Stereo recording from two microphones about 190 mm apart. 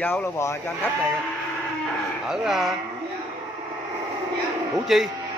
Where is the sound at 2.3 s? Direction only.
Centre (ahead or behind).